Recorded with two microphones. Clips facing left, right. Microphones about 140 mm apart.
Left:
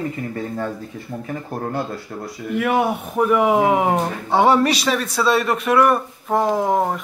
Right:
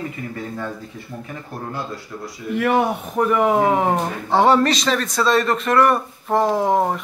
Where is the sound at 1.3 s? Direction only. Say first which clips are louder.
Left 6 dB; 50° left (ahead or behind).